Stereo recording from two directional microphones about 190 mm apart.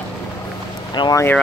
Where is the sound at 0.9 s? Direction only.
20° left (ahead or behind).